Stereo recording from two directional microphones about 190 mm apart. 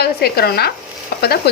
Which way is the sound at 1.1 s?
55° left (ahead or behind).